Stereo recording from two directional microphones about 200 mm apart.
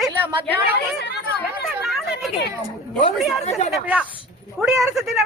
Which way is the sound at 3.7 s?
5° right (ahead or behind).